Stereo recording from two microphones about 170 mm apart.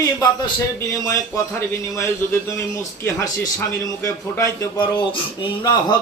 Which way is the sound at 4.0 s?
20° left (ahead or behind).